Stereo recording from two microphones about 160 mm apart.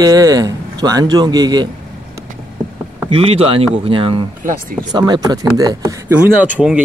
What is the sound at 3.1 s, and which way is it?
Speech, 35° right (ahead or behind).